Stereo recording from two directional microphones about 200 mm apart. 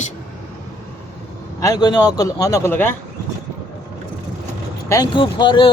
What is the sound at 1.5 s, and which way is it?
A man's voice, 15° left (ahead or behind).